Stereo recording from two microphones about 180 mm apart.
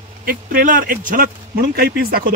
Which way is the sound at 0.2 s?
55° right (ahead or behind).